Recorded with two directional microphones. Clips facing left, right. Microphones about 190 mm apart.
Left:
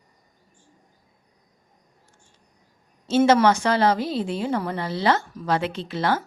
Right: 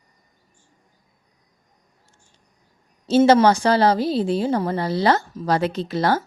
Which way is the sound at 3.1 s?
35° right (ahead or behind).